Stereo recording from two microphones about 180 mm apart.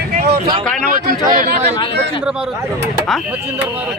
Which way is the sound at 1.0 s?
50° right (ahead or behind).